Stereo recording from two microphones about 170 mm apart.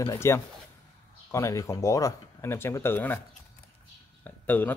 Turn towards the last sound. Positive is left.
turn(degrees=10)  # may be behind; listen again after turning